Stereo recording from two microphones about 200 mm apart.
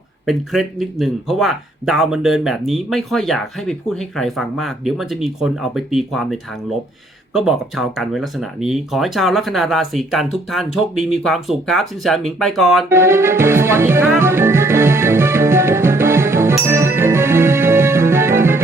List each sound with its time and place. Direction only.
0.3 s speech: centre (ahead or behind)
12.9 s music: 10° right (ahead or behind)